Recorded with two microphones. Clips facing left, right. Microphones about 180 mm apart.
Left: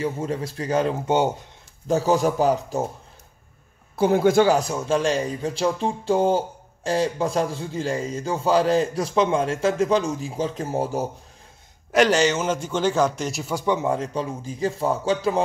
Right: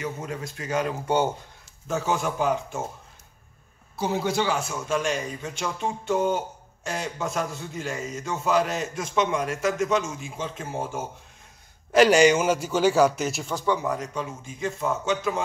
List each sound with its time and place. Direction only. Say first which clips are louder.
0.0 s a man's voice: left 6 dB; 30° left (ahead or behind)
1.9 s a man's voice: left 7 dB; 35° left (ahead or behind)
4.0 s a man's voice: left 8 dB; 55° left (ahead or behind); by 11.1 s 40° left (ahead or behind)
11.9 s a man's voice: right 2 dB; 5° right (ahead or behind)
13.6 s a man's voice: left 4 dB; 20° left (ahead or behind)